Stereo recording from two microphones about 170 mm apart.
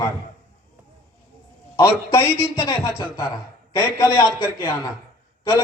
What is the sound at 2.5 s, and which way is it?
A man's voice, 20° left (ahead or behind).